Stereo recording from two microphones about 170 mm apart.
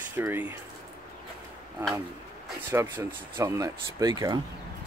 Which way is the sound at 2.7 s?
15° right (ahead or behind).